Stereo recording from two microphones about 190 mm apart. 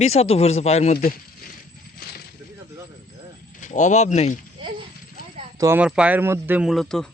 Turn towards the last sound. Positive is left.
turn(degrees=0)  # may be behind; listen again after turning